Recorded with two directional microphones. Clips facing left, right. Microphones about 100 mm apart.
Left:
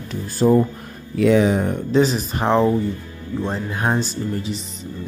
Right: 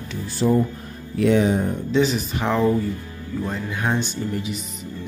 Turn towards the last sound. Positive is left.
turn(degrees=35)  # may be behind; listen again after turning